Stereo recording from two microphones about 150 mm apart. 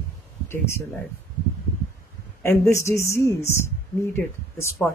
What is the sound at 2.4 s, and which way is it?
A woman's voice, 20° left (ahead or behind).